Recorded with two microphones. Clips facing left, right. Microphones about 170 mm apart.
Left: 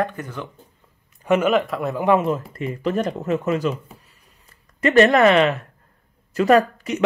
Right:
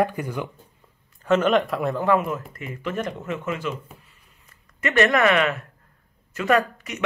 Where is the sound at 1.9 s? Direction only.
15° left (ahead or behind).